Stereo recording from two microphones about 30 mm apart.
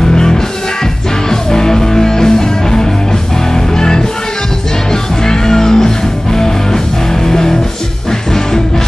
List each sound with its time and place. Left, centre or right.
0.1 s music: left
5.2 s music: centre